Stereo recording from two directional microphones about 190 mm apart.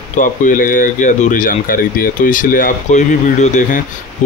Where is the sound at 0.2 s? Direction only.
45° left (ahead or behind).